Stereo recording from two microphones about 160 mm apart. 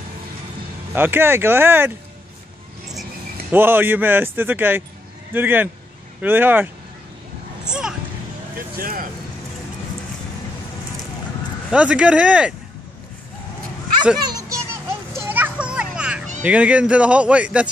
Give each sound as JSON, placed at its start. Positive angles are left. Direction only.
{"t": 0.9, "sound": "a man's voice", "side_deg": -15}
{"t": 3.5, "sound": "a man's voice", "side_deg": -15}
{"t": 7.6, "sound": "a sound", "side_deg": -5}
{"t": 8.7, "sound": "speech", "side_deg": -60}
{"t": 11.7, "sound": "a man's voice", "side_deg": -5}
{"t": 14.2, "sound": "children playing", "side_deg": -25}
{"t": 15.1, "sound": "children playing", "side_deg": -10}
{"t": 16.4, "sound": "a man's voice", "side_deg": -10}